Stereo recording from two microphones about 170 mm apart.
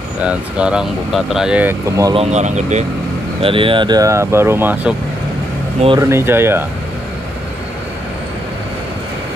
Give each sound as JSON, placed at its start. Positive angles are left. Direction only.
{"t": 0.2, "sound": "speech", "side_deg": -5}
{"t": 2.1, "sound": "speech", "side_deg": -45}
{"t": 3.4, "sound": "speech", "side_deg": -30}
{"t": 5.9, "sound": "speech", "side_deg": -15}